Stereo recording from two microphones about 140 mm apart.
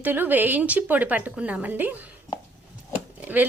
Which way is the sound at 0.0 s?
15° right (ahead or behind).